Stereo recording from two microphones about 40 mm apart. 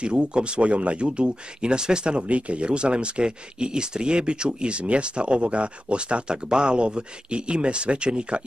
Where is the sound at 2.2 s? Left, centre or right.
Right.